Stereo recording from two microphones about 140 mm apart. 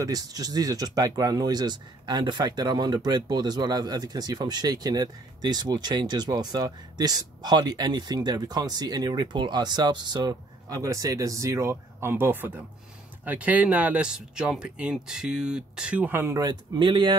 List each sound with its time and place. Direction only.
0.0 s speech: 25° right (ahead or behind)
16.7 s speech: 35° right (ahead or behind)